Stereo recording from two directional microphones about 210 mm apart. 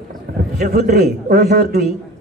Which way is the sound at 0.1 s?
40° right (ahead or behind).